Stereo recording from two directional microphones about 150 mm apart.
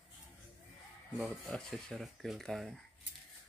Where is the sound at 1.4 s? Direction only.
5° left (ahead or behind).